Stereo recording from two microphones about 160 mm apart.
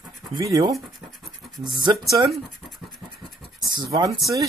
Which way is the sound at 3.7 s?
25° right (ahead or behind).